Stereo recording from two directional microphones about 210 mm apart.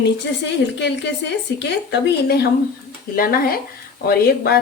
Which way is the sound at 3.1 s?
45° left (ahead or behind).